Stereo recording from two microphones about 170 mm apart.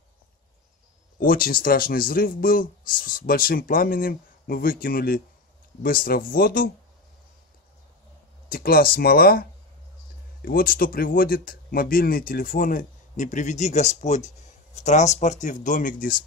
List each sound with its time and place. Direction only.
1.2 s speech: 55° left (ahead or behind)
8.5 s speech: 60° left (ahead or behind)